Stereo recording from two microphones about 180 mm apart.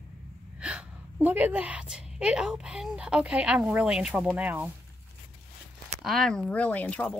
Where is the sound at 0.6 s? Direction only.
5° right (ahead or behind).